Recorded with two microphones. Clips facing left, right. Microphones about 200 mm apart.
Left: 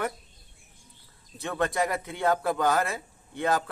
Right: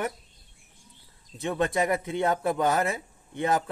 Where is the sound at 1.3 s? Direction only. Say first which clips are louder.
Right 2 dB; 20° right (ahead or behind).